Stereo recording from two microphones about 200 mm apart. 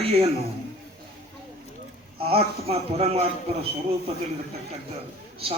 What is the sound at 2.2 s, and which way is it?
Speech, 30° right (ahead or behind).